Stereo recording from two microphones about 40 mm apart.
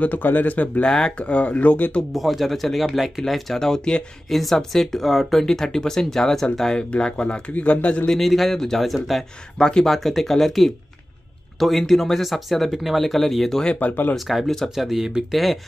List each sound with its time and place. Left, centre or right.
0.0 s speech: left
0.8 s speech: centre
1.1 s speech: left
2.1 s speech: centre
3.5 s speech: centre
4.3 s speech: centre; by 8.1 s left
8.1 s speech: centre
9.6 s speech: centre
9.8 s speech: centre